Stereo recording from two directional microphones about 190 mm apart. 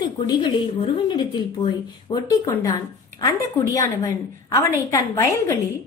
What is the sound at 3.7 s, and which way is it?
A woman's voice, 15° left (ahead or behind).